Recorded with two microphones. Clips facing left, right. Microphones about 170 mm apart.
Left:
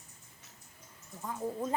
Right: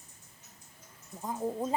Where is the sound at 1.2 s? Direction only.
20° right (ahead or behind).